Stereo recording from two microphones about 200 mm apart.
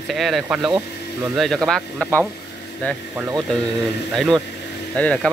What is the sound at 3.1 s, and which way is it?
Speech, 10° right (ahead or behind).